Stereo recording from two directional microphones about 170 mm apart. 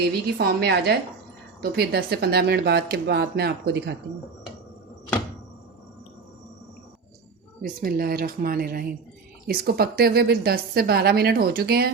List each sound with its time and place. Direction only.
0.3 s a woman's voice: 70° right (ahead or behind)
7.6 s a woman's voice: 60° right (ahead or behind)